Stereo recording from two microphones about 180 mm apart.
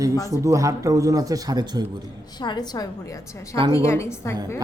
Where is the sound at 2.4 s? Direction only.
25° left (ahead or behind).